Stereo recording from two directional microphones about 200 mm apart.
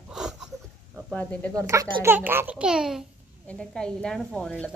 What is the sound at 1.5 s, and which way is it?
A child's voice, 15° right (ahead or behind).